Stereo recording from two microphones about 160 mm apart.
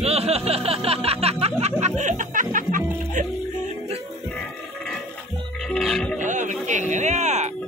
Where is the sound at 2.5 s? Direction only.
55° right (ahead or behind).